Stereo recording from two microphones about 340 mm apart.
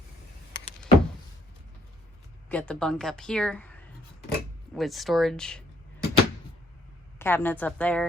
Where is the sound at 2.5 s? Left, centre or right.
Centre.